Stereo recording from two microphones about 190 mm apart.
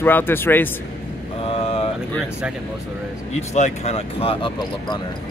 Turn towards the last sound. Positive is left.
turn(degrees=25)  # may be behind; listen again after turning